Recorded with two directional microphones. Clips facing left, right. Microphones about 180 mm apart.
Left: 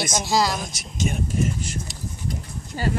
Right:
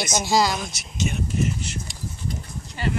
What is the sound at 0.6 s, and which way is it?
Speech, 45° left (ahead or behind).